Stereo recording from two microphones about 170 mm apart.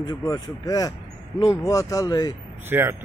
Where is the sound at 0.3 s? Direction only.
20° left (ahead or behind).